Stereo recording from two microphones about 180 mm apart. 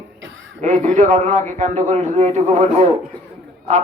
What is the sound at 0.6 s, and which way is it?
A man's voice, 45° right (ahead or behind).